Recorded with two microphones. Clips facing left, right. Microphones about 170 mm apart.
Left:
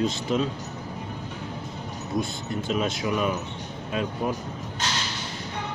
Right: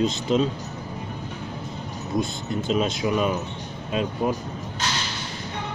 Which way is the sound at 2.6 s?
20° right (ahead or behind).